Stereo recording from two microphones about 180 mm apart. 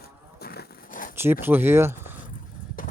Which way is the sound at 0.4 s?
55° left (ahead or behind).